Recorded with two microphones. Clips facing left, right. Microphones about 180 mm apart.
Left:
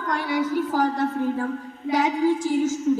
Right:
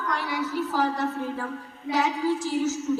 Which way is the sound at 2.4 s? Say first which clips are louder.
Left 4 dB; 50° left (ahead or behind).